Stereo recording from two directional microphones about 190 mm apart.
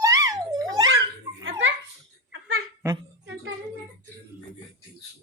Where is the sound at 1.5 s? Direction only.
85° right.